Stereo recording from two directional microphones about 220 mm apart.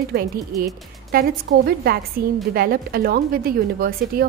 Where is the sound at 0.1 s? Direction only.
45° right (ahead or behind).